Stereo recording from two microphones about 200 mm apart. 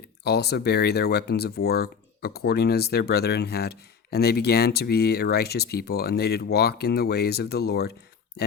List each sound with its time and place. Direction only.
0.3 s speech: 55° left (ahead or behind)